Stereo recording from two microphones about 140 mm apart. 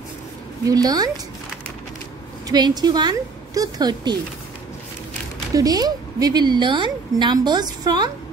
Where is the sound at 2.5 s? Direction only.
30° right (ahead or behind).